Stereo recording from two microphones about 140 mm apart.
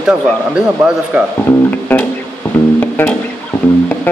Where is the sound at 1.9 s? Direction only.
15° left (ahead or behind).